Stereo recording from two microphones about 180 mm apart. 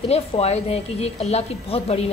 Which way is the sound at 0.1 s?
35° left (ahead or behind).